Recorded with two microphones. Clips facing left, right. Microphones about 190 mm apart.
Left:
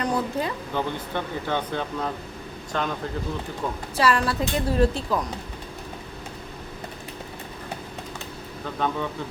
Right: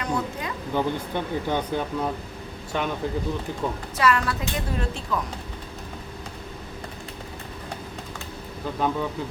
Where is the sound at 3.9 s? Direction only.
30° left (ahead or behind).